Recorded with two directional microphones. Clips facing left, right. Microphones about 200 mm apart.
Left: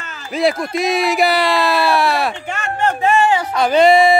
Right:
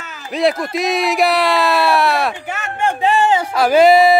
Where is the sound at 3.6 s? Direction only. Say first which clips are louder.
Right 1 dB; 5° right (ahead or behind).